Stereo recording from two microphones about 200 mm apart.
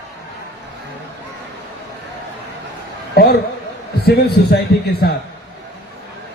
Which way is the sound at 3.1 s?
55° left (ahead or behind).